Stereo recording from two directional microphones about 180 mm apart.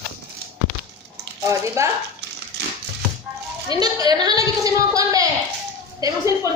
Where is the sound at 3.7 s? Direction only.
20° right (ahead or behind).